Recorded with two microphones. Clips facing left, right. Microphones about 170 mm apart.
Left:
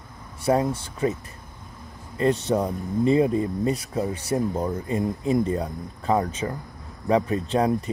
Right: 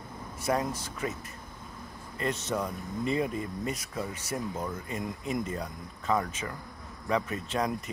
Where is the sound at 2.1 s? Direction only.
30° left (ahead or behind).